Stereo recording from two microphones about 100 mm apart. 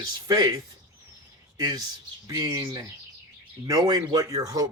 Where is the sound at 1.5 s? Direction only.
40° right (ahead or behind).